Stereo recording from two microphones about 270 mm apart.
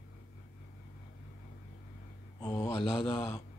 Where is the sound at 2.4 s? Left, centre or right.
Centre.